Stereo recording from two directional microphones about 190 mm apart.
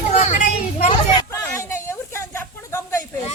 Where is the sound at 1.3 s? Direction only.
15° left (ahead or behind).